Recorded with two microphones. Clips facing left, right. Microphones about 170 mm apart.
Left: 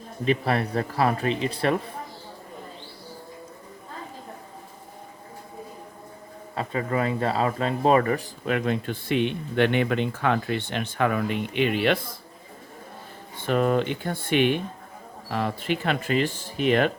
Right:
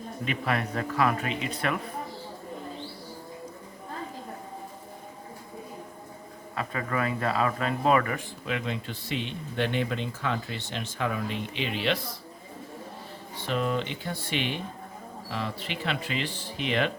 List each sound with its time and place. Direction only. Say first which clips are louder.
0.3 s a man's voice: left 6 dB; 35° left (ahead or behind)
6.6 s a man's voice: left 4 dB; 30° left (ahead or behind); by 11.9 s 55° left (ahead or behind)
13.4 s speech: left 6 dB; 50° left (ahead or behind)